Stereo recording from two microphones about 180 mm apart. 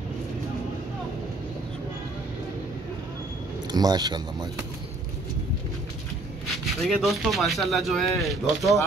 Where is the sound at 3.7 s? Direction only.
20° right (ahead or behind).